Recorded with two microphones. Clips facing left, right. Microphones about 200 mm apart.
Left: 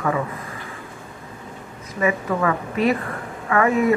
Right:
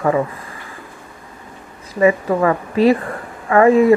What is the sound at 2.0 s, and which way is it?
A woman's voice, 30° right (ahead or behind).